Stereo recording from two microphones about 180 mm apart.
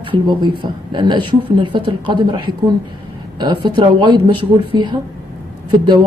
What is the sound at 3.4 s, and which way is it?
Speech, 25° right (ahead or behind).